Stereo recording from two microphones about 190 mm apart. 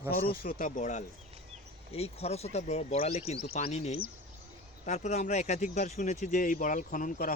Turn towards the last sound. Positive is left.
turn(degrees=45)  # may be behind; listen again after turning